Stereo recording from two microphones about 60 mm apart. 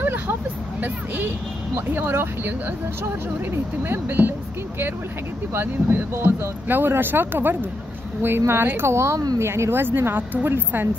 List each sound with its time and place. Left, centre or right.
0.0 s vehicle: right
2.0 s speech: right
3.9 s speech: right
5.5 s a woman's voice: right